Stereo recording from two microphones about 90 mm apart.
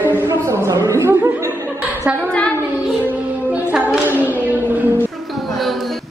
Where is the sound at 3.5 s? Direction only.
15° right (ahead or behind).